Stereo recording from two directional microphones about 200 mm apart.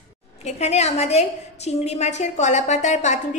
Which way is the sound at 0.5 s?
35° left (ahead or behind).